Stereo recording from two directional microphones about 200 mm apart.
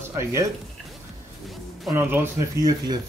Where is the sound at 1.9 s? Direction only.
10° right (ahead or behind).